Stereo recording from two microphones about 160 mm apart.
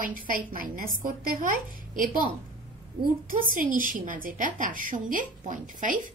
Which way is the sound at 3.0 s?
60° right (ahead or behind).